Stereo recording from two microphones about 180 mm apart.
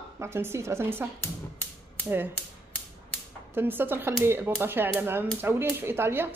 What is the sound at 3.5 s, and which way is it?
A woman's voice, 10° right (ahead or behind).